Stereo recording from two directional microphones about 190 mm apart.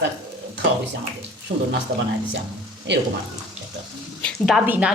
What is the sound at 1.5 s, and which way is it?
Speech, 40° right (ahead or behind).